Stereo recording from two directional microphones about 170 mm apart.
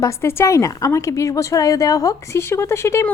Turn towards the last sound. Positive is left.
turn(degrees=15)  # may be behind; listen again after turning